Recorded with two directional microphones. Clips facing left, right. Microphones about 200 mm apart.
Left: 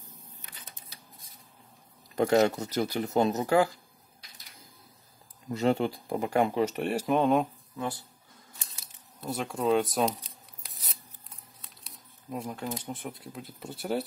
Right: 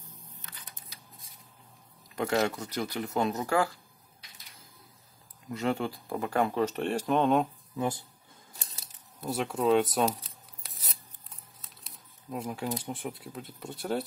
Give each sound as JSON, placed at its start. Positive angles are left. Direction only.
{"t": 0.4, "sound": "camera", "side_deg": 15}
{"t": 2.3, "sound": "speech", "side_deg": 20}
{"t": 5.7, "sound": "speech", "side_deg": 20}
{"t": 8.5, "sound": "scissors", "side_deg": -35}
{"t": 9.2, "sound": "speech", "side_deg": -5}
{"t": 10.6, "sound": "scissors", "side_deg": 0}
{"t": 11.6, "sound": "speech", "side_deg": 0}